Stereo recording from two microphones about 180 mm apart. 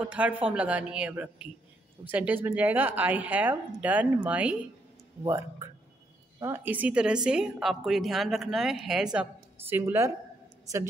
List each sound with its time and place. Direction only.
0.0 s speech: 10° right (ahead or behind)
5.2 s speech: 20° right (ahead or behind)